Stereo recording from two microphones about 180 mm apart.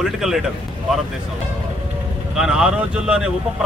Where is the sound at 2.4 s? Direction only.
5° right (ahead or behind).